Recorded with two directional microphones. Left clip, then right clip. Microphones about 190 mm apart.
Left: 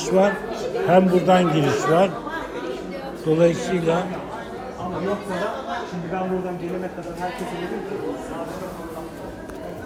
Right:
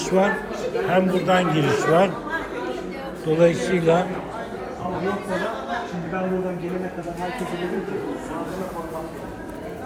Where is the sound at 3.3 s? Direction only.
20° left (ahead or behind).